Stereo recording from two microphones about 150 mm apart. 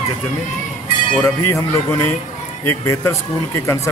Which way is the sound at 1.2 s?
15° left (ahead or behind).